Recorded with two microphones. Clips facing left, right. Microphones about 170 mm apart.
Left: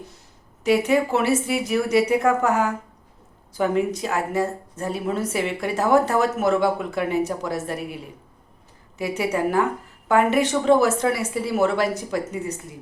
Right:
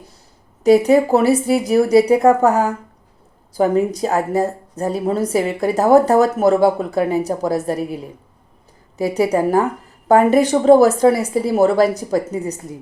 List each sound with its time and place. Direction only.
0.6 s speech: 40° right (ahead or behind)
9.0 s speech: 35° right (ahead or behind)